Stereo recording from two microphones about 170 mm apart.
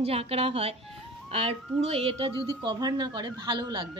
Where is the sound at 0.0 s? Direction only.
35° right (ahead or behind).